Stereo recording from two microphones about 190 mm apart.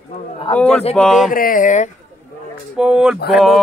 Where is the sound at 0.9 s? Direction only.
Centre (ahead or behind).